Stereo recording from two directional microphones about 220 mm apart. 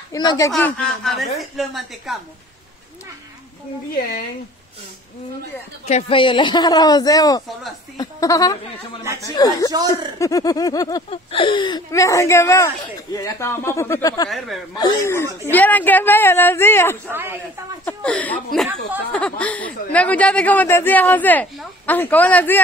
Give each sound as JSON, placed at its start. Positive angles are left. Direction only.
{"t": 0.1, "sound": "speech", "side_deg": 15}
{"t": 0.5, "sound": "a man's voice", "side_deg": 5}
{"t": 5.9, "sound": "speech", "side_deg": 25}
{"t": 17.1, "sound": "a man's voice", "side_deg": -10}
{"t": 17.8, "sound": "speech", "side_deg": 5}